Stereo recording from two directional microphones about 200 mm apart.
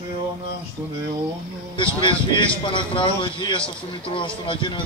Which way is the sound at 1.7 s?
25° left (ahead or behind).